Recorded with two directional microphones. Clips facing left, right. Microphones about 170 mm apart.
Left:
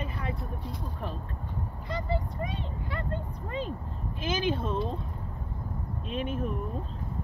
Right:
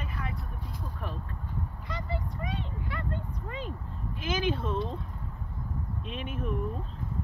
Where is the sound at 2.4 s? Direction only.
35° left (ahead or behind).